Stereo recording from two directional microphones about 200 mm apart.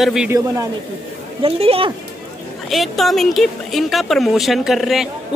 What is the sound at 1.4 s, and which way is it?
Speech, 30° right (ahead or behind).